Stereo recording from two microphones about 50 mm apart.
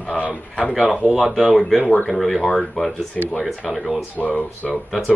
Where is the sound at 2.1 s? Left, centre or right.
Centre.